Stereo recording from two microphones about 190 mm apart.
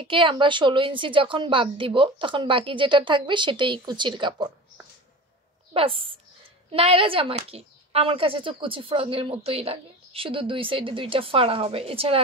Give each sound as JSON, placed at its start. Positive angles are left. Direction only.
{"t": 0.1, "sound": "speech", "side_deg": -25}
{"t": 5.7, "sound": "a woman's voice", "side_deg": -30}